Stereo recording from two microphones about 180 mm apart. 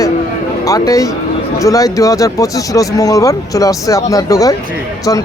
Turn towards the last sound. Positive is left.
turn(degrees=20)  # may be behind; listen again after turning